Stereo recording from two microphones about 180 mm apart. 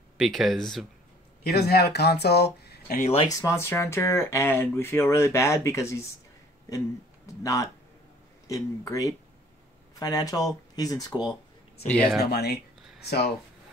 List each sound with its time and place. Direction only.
0.2 s speech: centre (ahead or behind)
1.4 s speech: 60° left (ahead or behind)
3.2 s speech: 20° left (ahead or behind)
7.2 s speech: 15° left (ahead or behind)
11.9 s speech: 5° left (ahead or behind)
12.2 s speech: 60° left (ahead or behind)